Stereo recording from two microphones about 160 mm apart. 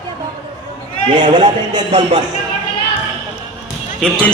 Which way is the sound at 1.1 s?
30° right (ahead or behind).